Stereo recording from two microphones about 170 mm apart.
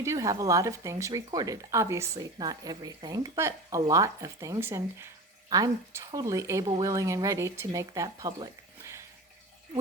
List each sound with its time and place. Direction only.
0.0 s speech: 20° right (ahead or behind)